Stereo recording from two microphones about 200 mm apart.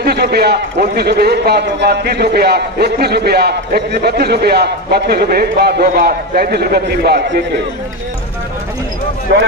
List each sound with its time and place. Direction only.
0.0 s a man's voice: 55° right (ahead or behind)